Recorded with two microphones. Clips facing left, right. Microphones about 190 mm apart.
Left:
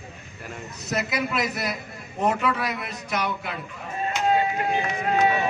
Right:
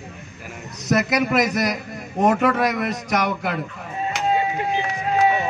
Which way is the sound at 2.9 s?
90° right.